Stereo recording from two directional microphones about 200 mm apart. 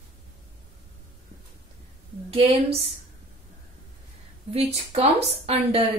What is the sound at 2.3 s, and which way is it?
Speech, 30° right (ahead or behind).